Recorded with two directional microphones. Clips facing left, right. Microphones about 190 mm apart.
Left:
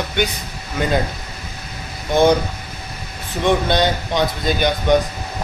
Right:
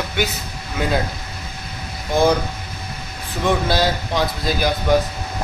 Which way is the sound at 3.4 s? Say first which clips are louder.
Left 2 dB; 5° right (ahead or behind).